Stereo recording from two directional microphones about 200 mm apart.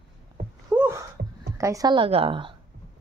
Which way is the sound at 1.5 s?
15° right (ahead or behind).